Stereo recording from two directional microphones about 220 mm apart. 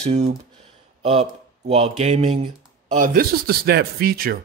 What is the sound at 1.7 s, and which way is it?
A man's voice, 30° right (ahead or behind).